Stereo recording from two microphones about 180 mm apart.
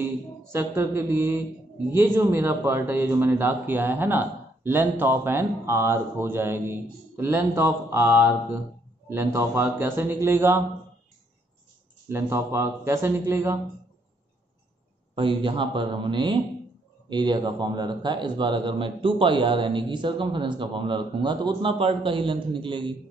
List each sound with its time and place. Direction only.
0.5 s speech: 15° right (ahead or behind)
12.1 s speech: 15° right (ahead or behind)
15.1 s speech: 30° right (ahead or behind)